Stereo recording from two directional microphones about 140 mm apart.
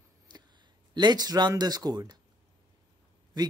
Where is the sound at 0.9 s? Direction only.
30° right (ahead or behind).